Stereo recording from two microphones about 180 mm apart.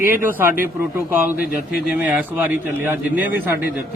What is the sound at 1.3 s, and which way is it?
Speech, 55° left (ahead or behind).